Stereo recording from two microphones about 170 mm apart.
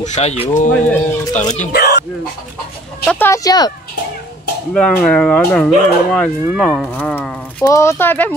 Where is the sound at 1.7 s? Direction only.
70° left (ahead or behind).